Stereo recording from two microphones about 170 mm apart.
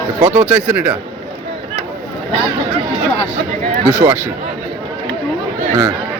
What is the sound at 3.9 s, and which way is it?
Speech, 15° right (ahead or behind).